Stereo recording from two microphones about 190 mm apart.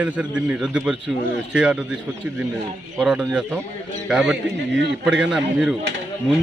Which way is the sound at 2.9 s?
5° right (ahead or behind).